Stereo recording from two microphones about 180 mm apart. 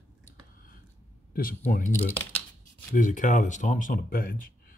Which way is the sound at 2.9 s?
45° left (ahead or behind).